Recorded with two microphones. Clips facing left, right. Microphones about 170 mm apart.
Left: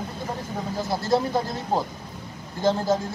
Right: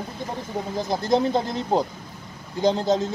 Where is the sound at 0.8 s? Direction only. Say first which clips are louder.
Right 2 dB; 20° right (ahead or behind).